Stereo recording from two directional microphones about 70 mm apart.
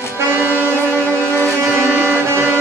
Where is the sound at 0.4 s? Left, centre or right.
Right.